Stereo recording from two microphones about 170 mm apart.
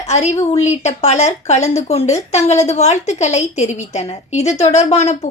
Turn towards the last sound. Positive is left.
turn(degrees=40)  # may be behind; listen again after turning